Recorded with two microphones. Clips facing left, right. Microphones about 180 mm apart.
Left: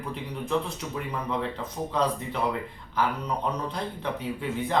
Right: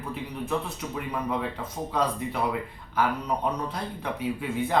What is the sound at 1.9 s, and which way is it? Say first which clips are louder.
Speech: even; 10° right (ahead or behind).